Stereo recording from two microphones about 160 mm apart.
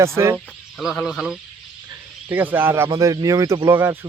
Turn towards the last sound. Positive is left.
turn(degrees=-15)  # may be behind; listen again after turning